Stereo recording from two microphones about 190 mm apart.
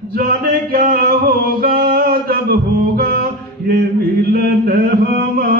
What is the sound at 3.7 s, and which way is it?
Chant, 55° right (ahead or behind).